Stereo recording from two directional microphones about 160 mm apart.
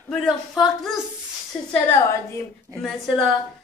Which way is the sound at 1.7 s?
15° left (ahead or behind).